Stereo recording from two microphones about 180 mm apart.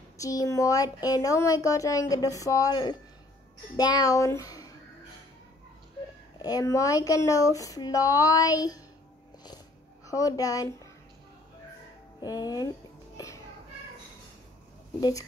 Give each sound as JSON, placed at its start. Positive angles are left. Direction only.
{"t": 0.2, "sound": "a woman's voice", "side_deg": 20}
{"t": 6.4, "sound": "a woman's voice", "side_deg": 20}
{"t": 10.0, "sound": "a woman's voice", "side_deg": 20}
{"t": 12.2, "sound": "a woman's voice", "side_deg": 20}
{"t": 15.0, "sound": "a woman's voice", "side_deg": 20}